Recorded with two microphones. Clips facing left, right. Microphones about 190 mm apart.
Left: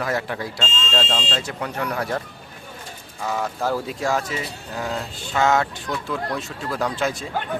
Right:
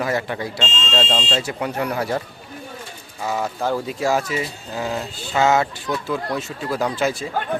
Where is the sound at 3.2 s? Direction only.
5° right (ahead or behind).